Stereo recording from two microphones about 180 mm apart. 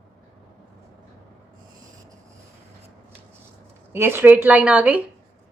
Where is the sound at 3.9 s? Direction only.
15° right (ahead or behind).